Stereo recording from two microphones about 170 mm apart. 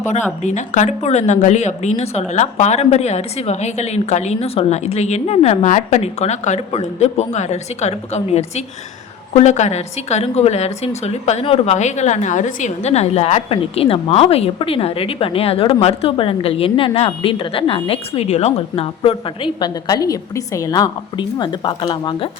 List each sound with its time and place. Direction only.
0.4 s a woman's voice: 45° left (ahead or behind); by 22.3 s 30° left (ahead or behind)